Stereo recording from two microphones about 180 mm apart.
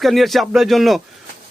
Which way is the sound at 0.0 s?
Centre (ahead or behind).